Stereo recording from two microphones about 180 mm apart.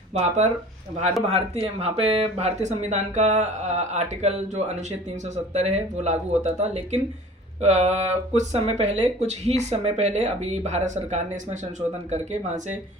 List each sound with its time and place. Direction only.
0.1 s speech: 40° right (ahead or behind)